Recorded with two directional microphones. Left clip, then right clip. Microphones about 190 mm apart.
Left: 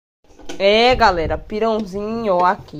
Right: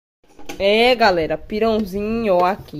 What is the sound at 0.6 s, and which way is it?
Speech, 10° right (ahead or behind).